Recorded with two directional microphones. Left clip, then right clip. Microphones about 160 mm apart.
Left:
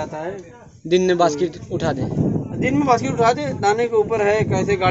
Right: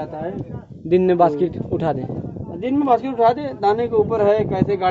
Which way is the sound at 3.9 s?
10° right (ahead or behind).